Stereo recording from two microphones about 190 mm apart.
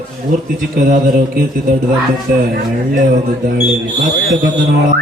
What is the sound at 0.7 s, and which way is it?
Speech, 45° right (ahead or behind).